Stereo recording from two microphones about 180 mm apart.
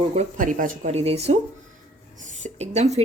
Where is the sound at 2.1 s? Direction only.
40° right (ahead or behind).